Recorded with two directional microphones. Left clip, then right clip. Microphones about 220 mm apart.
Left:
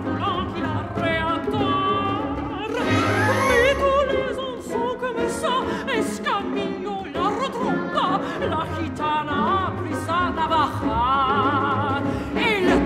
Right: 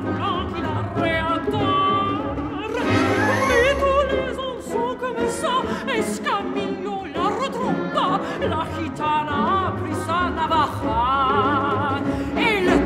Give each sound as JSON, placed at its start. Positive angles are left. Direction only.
{"t": 1.0, "sound": "music", "side_deg": -5}
{"t": 3.4, "sound": "music", "side_deg": 0}
{"t": 5.2, "sound": "music", "side_deg": -5}